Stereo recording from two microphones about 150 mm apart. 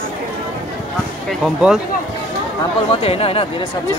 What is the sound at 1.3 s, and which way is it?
Speech, 5° right (ahead or behind).